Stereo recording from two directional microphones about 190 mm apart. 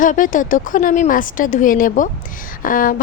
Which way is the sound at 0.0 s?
45° left (ahead or behind).